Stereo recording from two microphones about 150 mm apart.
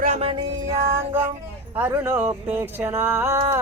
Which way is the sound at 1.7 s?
15° right (ahead or behind).